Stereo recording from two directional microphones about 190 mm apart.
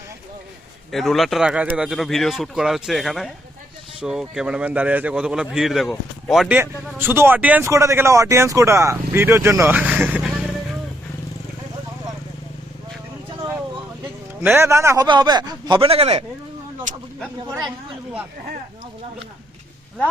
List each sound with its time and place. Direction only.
0.9 s speech: centre (ahead or behind)
6.6 s speech: 10° right (ahead or behind)
14.4 s a man's voice: 15° right (ahead or behind); by 16.2 s 30° right (ahead or behind)